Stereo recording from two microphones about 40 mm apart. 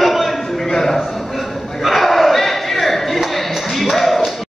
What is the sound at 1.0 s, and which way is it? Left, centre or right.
Crowd, centre.